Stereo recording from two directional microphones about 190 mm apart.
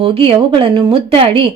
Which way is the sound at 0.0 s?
30° right (ahead or behind).